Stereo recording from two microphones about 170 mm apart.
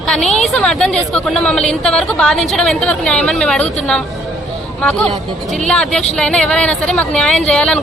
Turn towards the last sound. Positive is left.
turn(degrees=5)  # may be behind; listen again after turning